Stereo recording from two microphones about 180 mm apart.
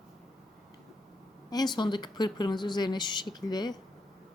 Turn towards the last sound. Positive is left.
turn(degrees=20)  # may be behind; listen again after turning